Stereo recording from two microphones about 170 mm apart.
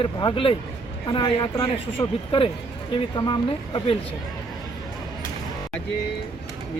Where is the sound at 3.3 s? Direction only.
30° left (ahead or behind).